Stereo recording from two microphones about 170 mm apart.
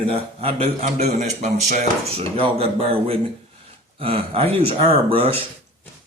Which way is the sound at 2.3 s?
35° right (ahead or behind).